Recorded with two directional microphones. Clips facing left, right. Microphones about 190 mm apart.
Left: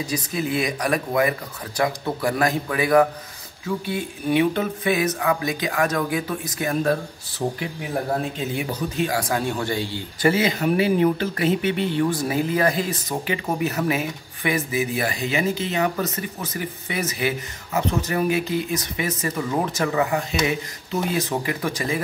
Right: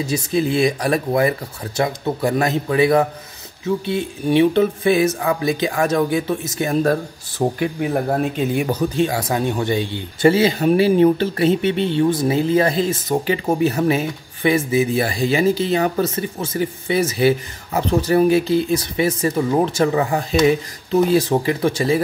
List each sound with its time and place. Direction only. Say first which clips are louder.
0.0 s a man's voice: right 6 dB; 25° right (ahead or behind)
7.4 s speech: right 6 dB; 70° right (ahead or behind)
8.9 s a man's voice: right 4 dB; 25° right (ahead or behind)